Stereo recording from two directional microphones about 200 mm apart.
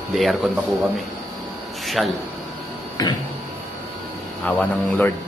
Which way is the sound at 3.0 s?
20° left (ahead or behind).